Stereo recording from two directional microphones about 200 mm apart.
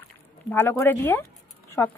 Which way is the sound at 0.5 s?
10° left (ahead or behind).